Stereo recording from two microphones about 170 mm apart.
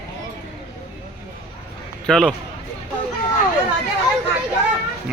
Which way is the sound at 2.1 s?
5° left (ahead or behind).